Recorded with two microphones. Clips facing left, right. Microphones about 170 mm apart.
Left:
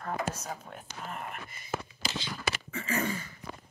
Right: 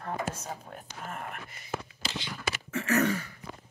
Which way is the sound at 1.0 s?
50° right (ahead or behind).